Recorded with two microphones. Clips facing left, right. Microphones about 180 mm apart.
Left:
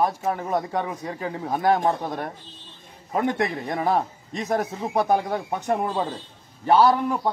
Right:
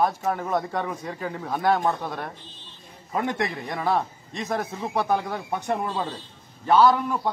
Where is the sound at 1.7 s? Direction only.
40° left (ahead or behind).